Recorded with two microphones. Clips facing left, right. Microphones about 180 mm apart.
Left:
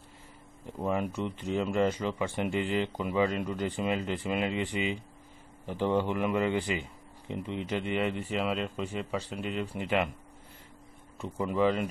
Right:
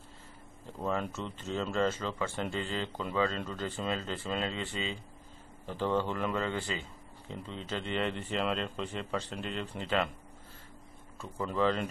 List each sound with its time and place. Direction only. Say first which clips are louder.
0.7 s speech: left 3 dB; 10° left (ahead or behind)
11.1 s speech: left 3 dB; 15° left (ahead or behind)